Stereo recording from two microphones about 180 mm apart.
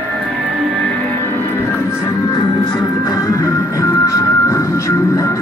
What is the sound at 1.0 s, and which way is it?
Music, 10° left (ahead or behind).